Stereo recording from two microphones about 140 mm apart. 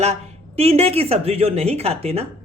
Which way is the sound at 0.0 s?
50° right (ahead or behind).